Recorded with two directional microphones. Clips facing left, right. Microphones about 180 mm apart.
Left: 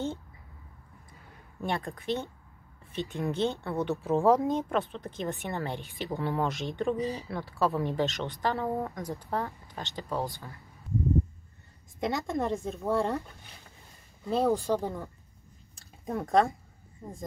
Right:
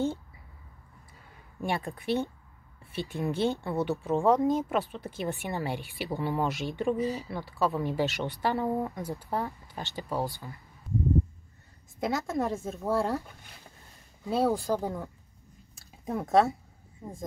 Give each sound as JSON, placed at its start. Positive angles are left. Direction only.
{"t": 1.6, "sound": "speech", "side_deg": -15}
{"t": 12.0, "sound": "speech", "side_deg": 0}
{"t": 16.1, "sound": "speech", "side_deg": -5}